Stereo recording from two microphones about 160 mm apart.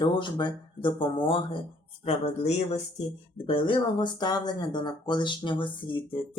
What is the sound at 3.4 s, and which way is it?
Speech, 30° left (ahead or behind).